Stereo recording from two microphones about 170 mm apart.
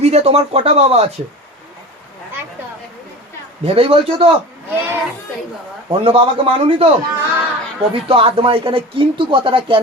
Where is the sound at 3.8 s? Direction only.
35° right (ahead or behind).